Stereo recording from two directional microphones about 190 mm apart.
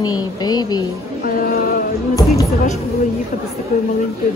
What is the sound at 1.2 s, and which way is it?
Speech, 50° left (ahead or behind).